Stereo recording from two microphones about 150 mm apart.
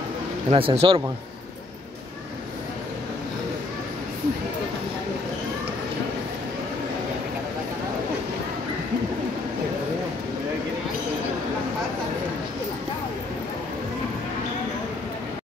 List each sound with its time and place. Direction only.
0.5 s speech: 40° right (ahead or behind)